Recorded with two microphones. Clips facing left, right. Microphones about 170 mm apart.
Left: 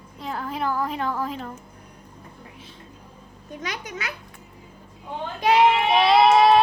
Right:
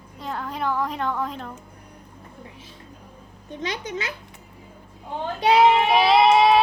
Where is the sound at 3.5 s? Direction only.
25° right (ahead or behind).